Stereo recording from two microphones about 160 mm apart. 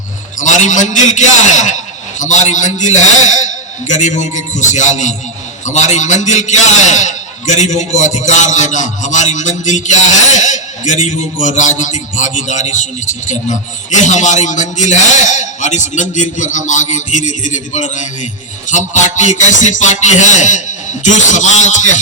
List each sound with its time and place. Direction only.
0.3 s a man's voice: 50° left (ahead or behind)
11.0 s a man's voice: 50° left (ahead or behind)